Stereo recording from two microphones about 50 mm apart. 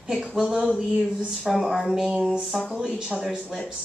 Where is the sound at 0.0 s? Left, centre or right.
Centre.